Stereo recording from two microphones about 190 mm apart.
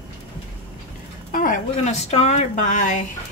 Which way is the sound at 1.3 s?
45° left (ahead or behind).